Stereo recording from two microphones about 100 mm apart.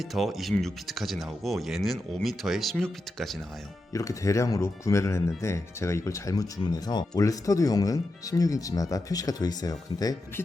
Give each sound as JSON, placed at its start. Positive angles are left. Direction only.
{"t": 0.0, "sound": "speech", "side_deg": 0}
{"t": 3.9, "sound": "speech", "side_deg": 35}